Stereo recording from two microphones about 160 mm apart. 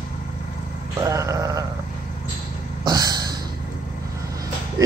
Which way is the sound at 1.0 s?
20° right (ahead or behind).